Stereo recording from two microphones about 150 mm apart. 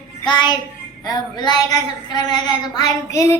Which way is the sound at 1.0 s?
30° left (ahead or behind).